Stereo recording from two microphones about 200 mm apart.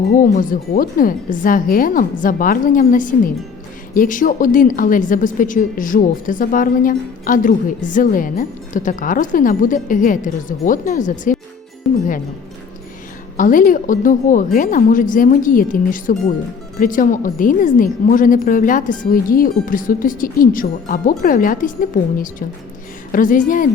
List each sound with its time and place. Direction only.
0.1 s a woman's voice: 40° left (ahead or behind)
11.9 s music: centre (ahead or behind)
13.3 s a woman's voice: 40° left (ahead or behind)